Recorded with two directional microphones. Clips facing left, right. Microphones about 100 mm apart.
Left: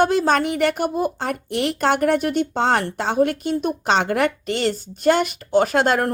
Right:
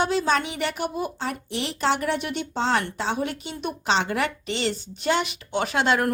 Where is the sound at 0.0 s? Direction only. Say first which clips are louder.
Left 5 dB; 50° left (ahead or behind).